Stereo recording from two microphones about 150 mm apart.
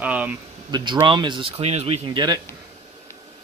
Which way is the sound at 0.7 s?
30° right (ahead or behind).